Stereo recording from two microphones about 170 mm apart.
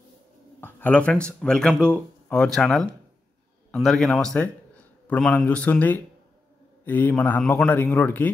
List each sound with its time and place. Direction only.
0.6 s a man's voice: 10° left (ahead or behind)